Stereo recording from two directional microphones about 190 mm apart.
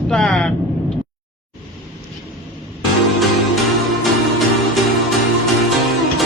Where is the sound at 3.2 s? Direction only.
Centre (ahead or behind).